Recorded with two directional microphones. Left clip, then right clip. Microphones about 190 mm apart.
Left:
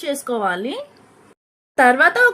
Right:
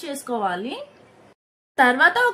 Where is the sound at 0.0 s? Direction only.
30° left (ahead or behind).